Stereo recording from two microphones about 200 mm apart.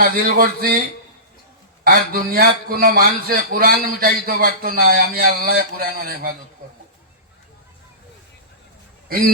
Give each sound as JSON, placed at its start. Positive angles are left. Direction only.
{"t": 0.0, "sound": "a man's voice", "side_deg": -45}
{"t": 1.8, "sound": "a man's voice", "side_deg": -50}
{"t": 9.0, "sound": "speech", "side_deg": -45}